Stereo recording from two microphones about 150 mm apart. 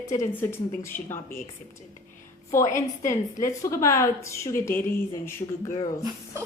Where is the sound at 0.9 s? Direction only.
65° left (ahead or behind).